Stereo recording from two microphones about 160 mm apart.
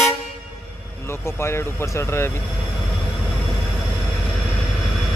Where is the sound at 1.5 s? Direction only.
15° left (ahead or behind).